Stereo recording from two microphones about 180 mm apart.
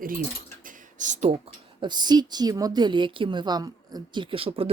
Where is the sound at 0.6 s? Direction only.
45° right (ahead or behind).